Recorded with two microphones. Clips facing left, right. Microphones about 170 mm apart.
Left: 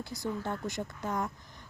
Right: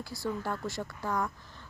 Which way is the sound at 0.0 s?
20° left (ahead or behind).